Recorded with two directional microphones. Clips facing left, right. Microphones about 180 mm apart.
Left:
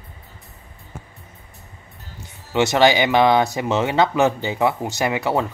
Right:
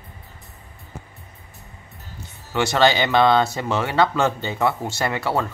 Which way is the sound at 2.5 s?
20° left (ahead or behind).